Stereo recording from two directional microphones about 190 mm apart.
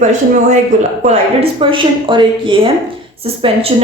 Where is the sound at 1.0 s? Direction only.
30° right (ahead or behind).